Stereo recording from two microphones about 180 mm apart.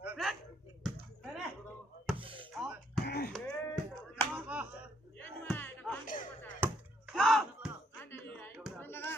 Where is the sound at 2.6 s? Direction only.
Centre (ahead or behind).